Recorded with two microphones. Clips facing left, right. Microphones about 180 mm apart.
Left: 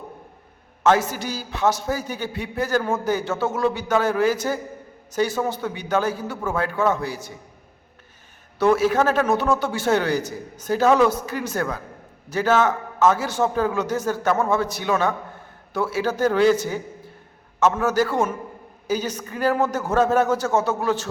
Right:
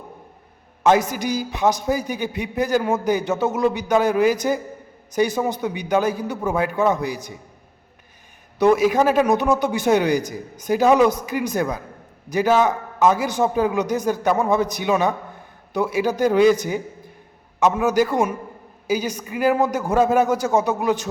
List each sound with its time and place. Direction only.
0.9 s a man's voice: 15° right (ahead or behind)
8.5 s a man's voice: 15° right (ahead or behind)